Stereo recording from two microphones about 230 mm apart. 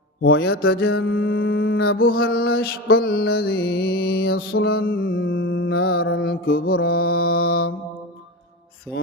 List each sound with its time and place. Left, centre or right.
0.2 s music: left
1.7 s music: left
2.0 s music: left
6.7 s music: left
7.3 s music: left